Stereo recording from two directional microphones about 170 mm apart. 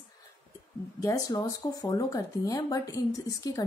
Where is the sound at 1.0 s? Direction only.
25° left (ahead or behind).